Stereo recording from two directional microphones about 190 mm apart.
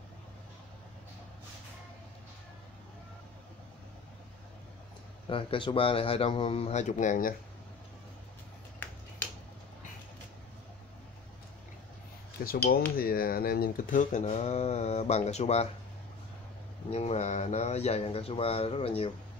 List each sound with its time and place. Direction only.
5.3 s speech: 25° left (ahead or behind); by 7.3 s 45° left (ahead or behind)
8.8 s finger snapping: 10° left (ahead or behind)
12.4 s speech: 50° left (ahead or behind); by 15.7 s 35° left (ahead or behind)
16.9 s speech: 35° left (ahead or behind)